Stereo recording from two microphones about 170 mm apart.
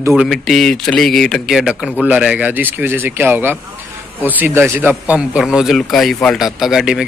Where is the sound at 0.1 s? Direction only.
Centre (ahead or behind).